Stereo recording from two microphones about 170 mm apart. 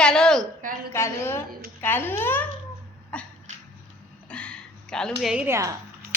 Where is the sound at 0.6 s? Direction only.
55° right (ahead or behind).